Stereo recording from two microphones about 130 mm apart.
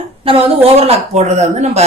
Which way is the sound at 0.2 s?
45° right (ahead or behind).